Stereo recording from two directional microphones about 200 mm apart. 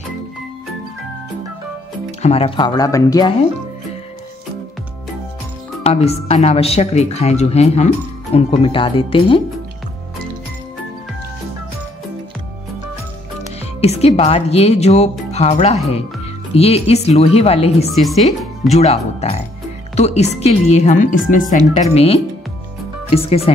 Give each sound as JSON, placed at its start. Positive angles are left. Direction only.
{"t": 2.0, "sound": "speech", "side_deg": 30}
{"t": 5.9, "sound": "speech", "side_deg": 30}
{"t": 13.8, "sound": "speech", "side_deg": 30}
{"t": 18.3, "sound": "music", "side_deg": 0}
{"t": 18.7, "sound": "speech", "side_deg": 35}